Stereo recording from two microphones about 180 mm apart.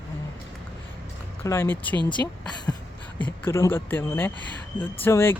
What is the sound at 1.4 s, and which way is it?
Speech, 15° left (ahead or behind).